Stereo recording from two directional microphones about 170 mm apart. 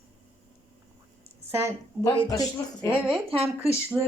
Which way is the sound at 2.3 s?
20° left (ahead or behind).